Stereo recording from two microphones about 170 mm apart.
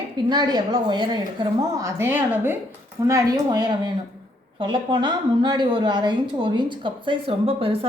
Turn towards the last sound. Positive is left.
turn(degrees=-35)  # may be behind; listen again after turning